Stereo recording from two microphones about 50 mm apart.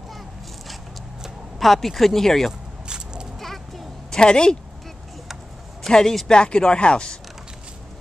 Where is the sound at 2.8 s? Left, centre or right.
Centre.